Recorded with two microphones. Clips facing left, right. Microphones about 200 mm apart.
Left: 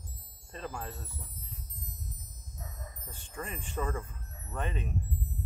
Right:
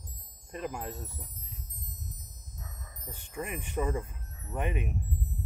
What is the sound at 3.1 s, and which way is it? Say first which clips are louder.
Speech: right 4 dB; 15° right (ahead or behind).